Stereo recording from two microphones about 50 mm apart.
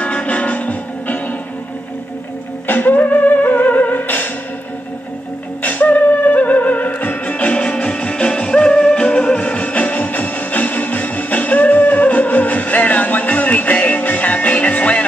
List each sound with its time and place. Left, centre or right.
0.0 s music: left
2.6 s music: left
5.6 s music: left